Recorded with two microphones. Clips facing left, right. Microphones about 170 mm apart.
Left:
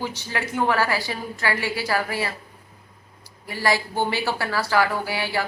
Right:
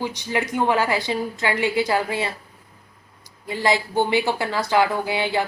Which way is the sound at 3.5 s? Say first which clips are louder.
Right 2 dB; 20° right (ahead or behind).